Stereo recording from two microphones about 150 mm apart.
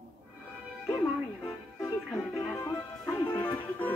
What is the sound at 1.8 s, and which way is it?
Music, 20° left (ahead or behind).